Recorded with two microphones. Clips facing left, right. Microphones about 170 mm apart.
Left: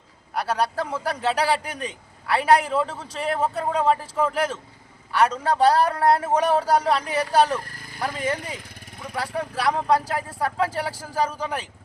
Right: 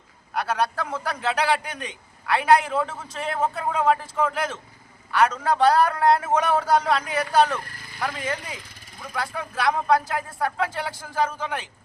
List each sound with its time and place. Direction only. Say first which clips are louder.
0.3 s a man's voice: left 1 dB; 35° left (ahead or behind)
5.1 s a man's voice: even; 30° left (ahead or behind)
8.7 s vehicle: left 2 dB; 60° left (ahead or behind)
9.1 s a man's voice: left 2 dB; 35° left (ahead or behind)